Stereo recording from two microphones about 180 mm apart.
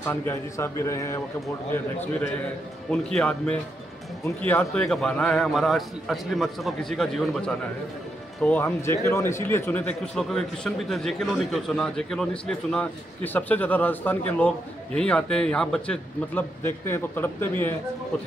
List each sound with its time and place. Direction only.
0.0 s speech: 15° left (ahead or behind)
3.2 s a man's voice: 5° left (ahead or behind)